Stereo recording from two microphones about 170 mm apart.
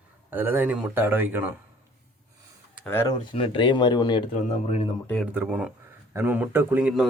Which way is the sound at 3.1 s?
35° left (ahead or behind).